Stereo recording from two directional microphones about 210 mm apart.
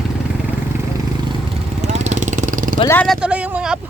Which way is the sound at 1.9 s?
35° right (ahead or behind).